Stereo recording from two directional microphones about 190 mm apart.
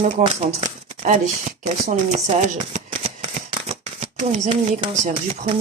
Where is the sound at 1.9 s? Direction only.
35° right (ahead or behind).